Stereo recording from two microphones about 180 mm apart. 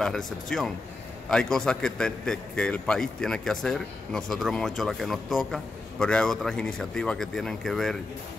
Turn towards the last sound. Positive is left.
turn(degrees=0)  # may be behind; listen again after turning